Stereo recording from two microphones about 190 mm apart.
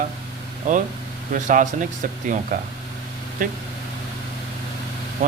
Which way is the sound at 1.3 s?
45° right (ahead or behind).